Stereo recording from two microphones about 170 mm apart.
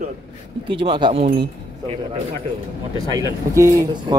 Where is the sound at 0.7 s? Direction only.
30° right (ahead or behind).